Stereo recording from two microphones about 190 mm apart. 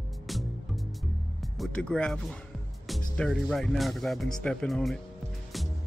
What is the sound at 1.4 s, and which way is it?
Speech, centre (ahead or behind).